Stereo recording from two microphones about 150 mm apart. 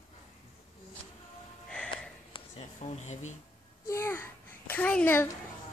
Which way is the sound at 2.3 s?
45° left (ahead or behind).